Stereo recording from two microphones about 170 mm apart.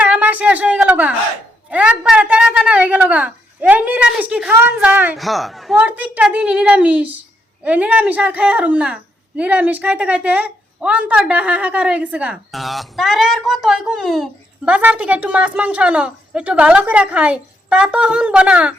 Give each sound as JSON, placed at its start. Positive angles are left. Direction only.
{"t": 0.0, "sound": "a sound", "side_deg": -10}
{"t": 1.7, "sound": "a woman's voice", "side_deg": -5}
{"t": 5.1, "sound": "a woman's voice", "side_deg": 0}